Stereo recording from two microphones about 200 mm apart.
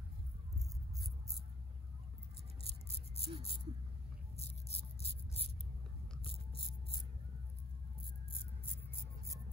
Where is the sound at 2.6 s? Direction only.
30° left (ahead or behind).